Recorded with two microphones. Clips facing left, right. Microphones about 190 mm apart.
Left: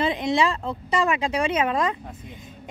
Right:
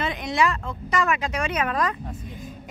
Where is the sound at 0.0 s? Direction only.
25° left (ahead or behind).